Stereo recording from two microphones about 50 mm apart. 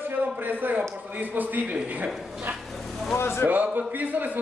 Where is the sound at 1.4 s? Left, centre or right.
Right.